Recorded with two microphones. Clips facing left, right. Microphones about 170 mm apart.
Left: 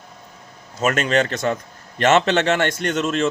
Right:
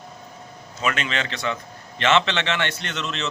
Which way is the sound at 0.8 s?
45° left (ahead or behind).